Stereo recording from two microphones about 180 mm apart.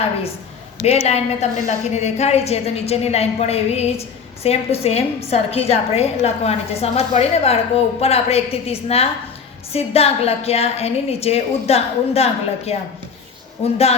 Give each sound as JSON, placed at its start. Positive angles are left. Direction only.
{"t": 0.8, "sound": "a woman's voice", "side_deg": 35}